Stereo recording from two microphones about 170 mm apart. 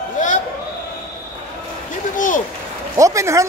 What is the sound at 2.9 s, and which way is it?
Speech, 20° right (ahead or behind).